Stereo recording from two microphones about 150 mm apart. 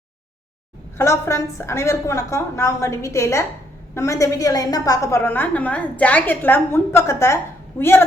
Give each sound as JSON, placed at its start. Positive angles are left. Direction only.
{"t": 0.9, "sound": "a woman's voice", "side_deg": 20}